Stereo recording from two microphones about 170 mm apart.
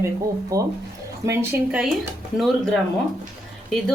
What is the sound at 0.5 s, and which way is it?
Speech, 20° right (ahead or behind).